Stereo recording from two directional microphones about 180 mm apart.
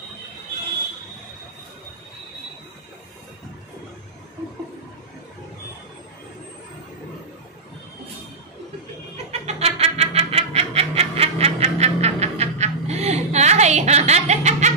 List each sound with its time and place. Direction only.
9.1 s music: 35° right (ahead or behind)